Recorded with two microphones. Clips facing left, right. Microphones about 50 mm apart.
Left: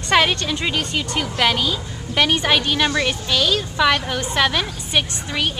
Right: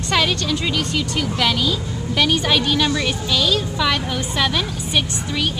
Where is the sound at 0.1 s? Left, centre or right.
Left.